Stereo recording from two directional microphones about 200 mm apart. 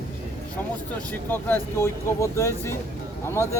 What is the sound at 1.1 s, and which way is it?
Speech, 10° left (ahead or behind).